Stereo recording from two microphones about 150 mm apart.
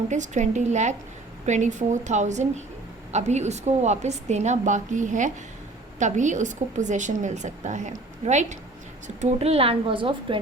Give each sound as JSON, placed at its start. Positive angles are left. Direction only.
{"t": 0.1, "sound": "a woman's voice", "side_deg": -55}